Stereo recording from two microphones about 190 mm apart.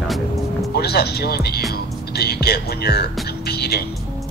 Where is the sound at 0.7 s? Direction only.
55° left (ahead or behind).